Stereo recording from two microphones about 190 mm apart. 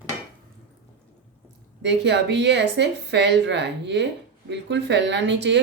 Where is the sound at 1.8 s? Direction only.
65° right (ahead or behind).